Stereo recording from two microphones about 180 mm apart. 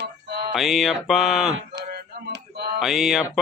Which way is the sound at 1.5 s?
65° right (ahead or behind).